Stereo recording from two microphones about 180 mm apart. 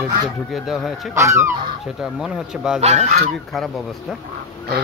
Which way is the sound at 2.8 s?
40° right (ahead or behind).